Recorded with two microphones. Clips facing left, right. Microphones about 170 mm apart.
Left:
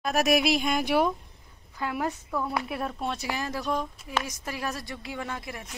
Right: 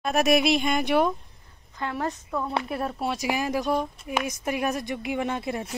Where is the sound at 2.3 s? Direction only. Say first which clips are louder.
Right 2 dB; 5° right (ahead or behind).